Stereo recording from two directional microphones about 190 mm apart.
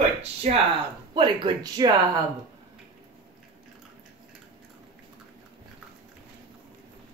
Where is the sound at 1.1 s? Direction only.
25° right (ahead or behind).